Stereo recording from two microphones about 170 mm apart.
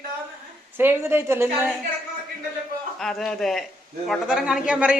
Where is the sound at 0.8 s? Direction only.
15° right (ahead or behind).